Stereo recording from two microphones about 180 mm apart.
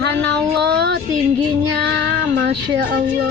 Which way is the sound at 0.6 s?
65° right (ahead or behind).